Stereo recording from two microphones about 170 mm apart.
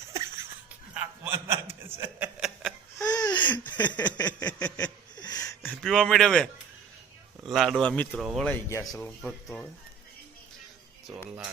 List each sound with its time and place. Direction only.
0.7 s a sound: 10° right (ahead or behind)
3.0 s laughter: 20° left (ahead or behind)
3.8 s a sound: 25° left (ahead or behind)
5.6 s a man's voice: 5° left (ahead or behind)
8.2 s speech: centre (ahead or behind)
8.4 s speech: 10° left (ahead or behind)